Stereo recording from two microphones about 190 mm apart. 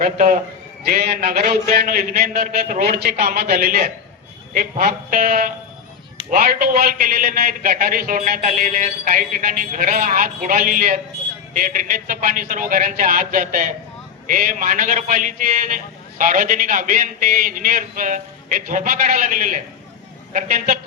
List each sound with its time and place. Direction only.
0.0 s a man's voice: 45° right (ahead or behind)